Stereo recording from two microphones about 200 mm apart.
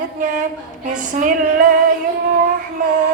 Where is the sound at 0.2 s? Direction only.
40° right (ahead or behind).